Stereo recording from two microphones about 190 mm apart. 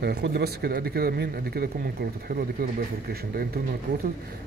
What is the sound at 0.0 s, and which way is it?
A man's voice, 60° right (ahead or behind).